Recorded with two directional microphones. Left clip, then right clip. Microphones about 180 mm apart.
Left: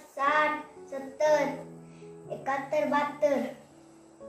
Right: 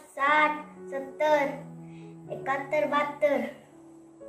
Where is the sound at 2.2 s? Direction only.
5° right (ahead or behind).